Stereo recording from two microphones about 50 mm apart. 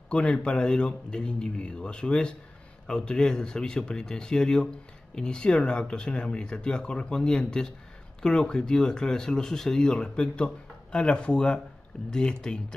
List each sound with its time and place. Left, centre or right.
0.1 s speech: centre